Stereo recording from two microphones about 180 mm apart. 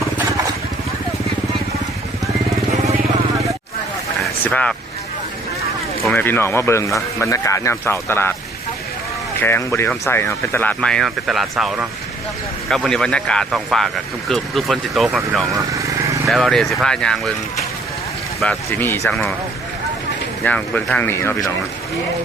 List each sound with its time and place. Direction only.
4.2 s vehicle: 5° left (ahead or behind)
6.1 s speech: 10° left (ahead or behind)
9.4 s speech: 15° left (ahead or behind)
15.7 s vehicle: 15° right (ahead or behind)
16.3 s speech: centre (ahead or behind)
20.4 s speech: 10° left (ahead or behind)